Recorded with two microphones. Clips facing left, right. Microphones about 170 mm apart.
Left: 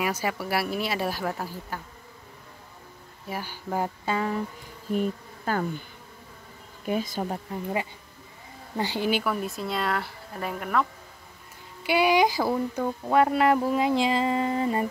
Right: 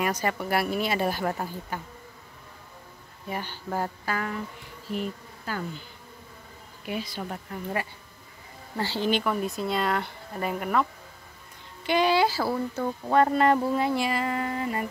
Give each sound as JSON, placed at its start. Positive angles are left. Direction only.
{"t": 0.0, "sound": "speech", "side_deg": 5}
{"t": 3.3, "sound": "speech", "side_deg": 5}
{"t": 4.9, "sound": "speech", "side_deg": 50}
{"t": 6.9, "sound": "speech", "side_deg": 45}
{"t": 7.5, "sound": "speech", "side_deg": 25}
{"t": 8.7, "sound": "speech", "side_deg": 15}
{"t": 11.8, "sound": "speech", "side_deg": 10}